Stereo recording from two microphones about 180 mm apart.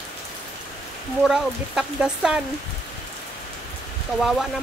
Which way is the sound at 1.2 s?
Centre (ahead or behind).